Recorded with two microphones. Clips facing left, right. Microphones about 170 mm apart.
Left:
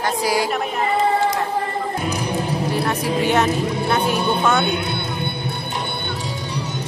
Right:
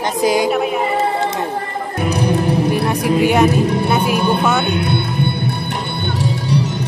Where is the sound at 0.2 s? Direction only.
20° right (ahead or behind).